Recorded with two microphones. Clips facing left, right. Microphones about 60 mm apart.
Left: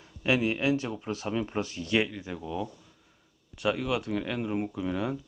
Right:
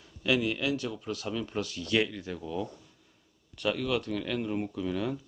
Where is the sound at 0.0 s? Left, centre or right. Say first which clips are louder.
Left 1 dB; left.